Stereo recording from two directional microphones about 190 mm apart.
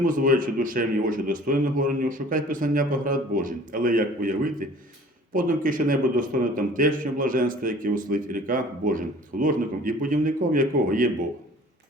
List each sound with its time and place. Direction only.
0.0 s a man's voice: 45° right (ahead or behind)